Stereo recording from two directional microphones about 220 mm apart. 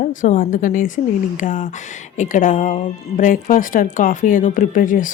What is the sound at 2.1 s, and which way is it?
Speech, 35° left (ahead or behind).